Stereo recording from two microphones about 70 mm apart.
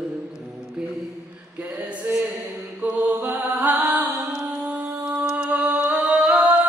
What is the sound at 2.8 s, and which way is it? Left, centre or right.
Mantra, centre.